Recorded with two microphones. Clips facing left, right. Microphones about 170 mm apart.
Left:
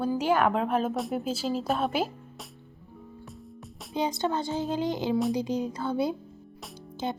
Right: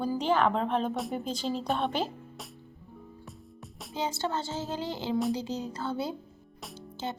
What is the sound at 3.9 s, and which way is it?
Speech, 15° left (ahead or behind).